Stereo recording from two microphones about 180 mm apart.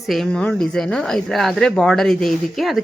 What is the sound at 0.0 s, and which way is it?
Speech, centre (ahead or behind).